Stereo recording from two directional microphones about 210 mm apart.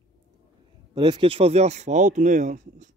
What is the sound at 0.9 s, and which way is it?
Speech, 20° right (ahead or behind).